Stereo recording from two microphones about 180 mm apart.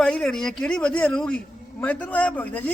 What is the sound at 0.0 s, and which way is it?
A man's voice, 5° left (ahead or behind).